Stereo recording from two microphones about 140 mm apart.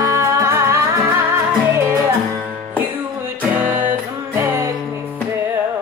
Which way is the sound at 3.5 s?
10° right (ahead or behind).